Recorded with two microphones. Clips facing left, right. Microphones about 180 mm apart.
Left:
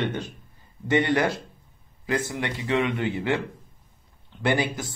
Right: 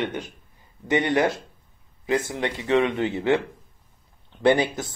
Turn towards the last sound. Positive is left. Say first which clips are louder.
# right 5 dB
turn(degrees=-25)  # may be behind; listen again after turning